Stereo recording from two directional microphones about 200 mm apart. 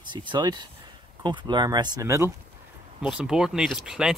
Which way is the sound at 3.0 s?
5° right (ahead or behind).